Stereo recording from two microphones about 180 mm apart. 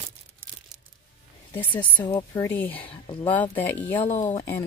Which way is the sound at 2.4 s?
10° left (ahead or behind).